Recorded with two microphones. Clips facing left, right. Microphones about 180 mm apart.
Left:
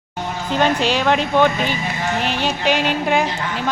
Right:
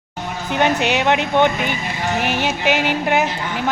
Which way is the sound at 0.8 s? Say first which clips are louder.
Even; 65° right (ahead or behind).